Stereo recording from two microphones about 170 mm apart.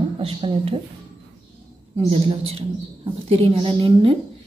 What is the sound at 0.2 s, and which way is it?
Speech, 30° right (ahead or behind).